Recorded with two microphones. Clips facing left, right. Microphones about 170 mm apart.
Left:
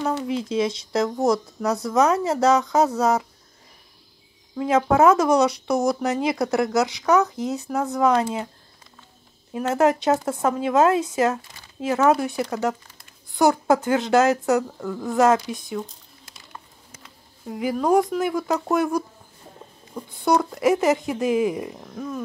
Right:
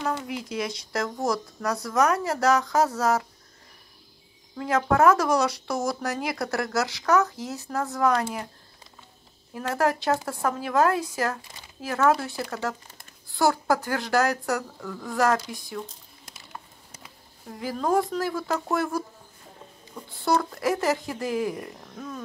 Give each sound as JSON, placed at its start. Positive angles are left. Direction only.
{"t": 0.0, "sound": "speech", "side_deg": 25}
{"t": 4.6, "sound": "speech", "side_deg": 20}
{"t": 9.5, "sound": "speech", "side_deg": 20}
{"t": 17.5, "sound": "speech", "side_deg": 15}
{"t": 20.1, "sound": "speech", "side_deg": 15}